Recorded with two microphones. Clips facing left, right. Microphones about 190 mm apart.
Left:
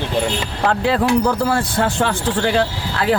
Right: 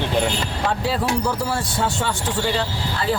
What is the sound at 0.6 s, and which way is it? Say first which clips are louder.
Speech: left 6 dB; 60° left (ahead or behind).